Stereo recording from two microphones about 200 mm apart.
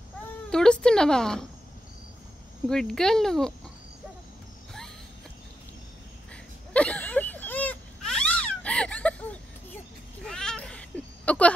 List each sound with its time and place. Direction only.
0.5 s a woman's voice: 5° left (ahead or behind)
2.7 s a woman's voice: 5° left (ahead or behind)
6.3 s a sound: 5° left (ahead or behind)
10.2 s cat: 5° left (ahead or behind)